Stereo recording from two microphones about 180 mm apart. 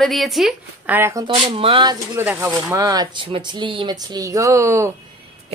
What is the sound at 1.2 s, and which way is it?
Speech, 30° right (ahead or behind).